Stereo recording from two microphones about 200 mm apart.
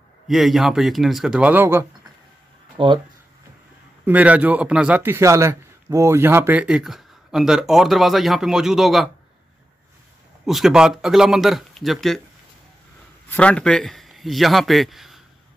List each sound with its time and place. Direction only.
0.3 s a man's voice: centre (ahead or behind)
2.8 s speech: 25° right (ahead or behind)
4.0 s a man's voice: 5° right (ahead or behind)
10.4 s a man's voice: centre (ahead or behind)
13.3 s a man's voice: 5° left (ahead or behind)